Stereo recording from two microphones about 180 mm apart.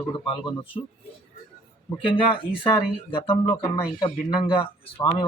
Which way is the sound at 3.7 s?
30° left (ahead or behind).